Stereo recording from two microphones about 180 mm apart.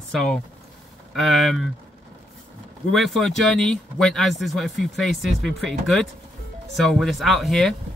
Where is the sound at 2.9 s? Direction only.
Centre (ahead or behind).